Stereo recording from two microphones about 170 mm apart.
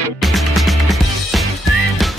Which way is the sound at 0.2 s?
Centre (ahead or behind).